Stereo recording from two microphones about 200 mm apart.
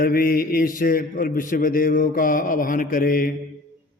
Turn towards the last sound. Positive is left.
turn(degrees=45)  # may be behind; listen again after turning